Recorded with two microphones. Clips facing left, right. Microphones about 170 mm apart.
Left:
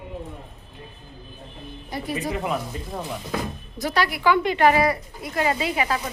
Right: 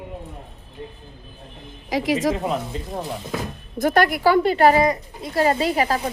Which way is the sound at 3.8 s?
50° right (ahead or behind).